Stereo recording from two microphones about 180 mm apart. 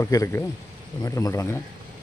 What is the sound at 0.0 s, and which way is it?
Speech, 15° left (ahead or behind).